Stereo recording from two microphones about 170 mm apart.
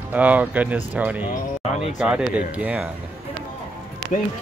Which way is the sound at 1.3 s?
40° left (ahead or behind).